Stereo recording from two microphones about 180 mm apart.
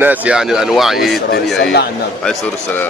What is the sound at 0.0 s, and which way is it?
A man's voice, 10° right (ahead or behind).